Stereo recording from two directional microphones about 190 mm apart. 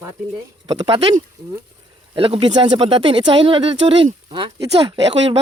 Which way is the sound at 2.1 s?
30° right (ahead or behind).